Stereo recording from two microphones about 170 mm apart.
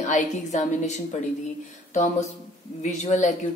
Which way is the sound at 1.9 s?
45° left (ahead or behind).